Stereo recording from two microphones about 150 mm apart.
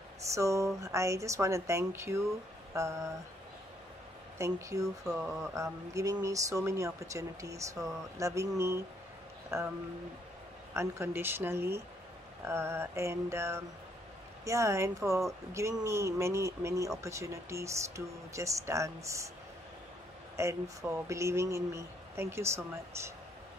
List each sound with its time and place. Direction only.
0.2 s speech: 20° right (ahead or behind)
4.4 s speech: 20° right (ahead or behind)
10.7 s speech: 15° right (ahead or behind)
20.3 s speech: 20° right (ahead or behind)